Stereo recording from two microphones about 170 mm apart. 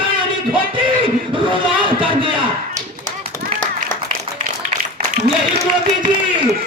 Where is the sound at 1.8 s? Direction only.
30° right (ahead or behind).